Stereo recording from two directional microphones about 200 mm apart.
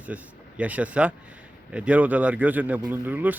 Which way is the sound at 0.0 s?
5° right (ahead or behind).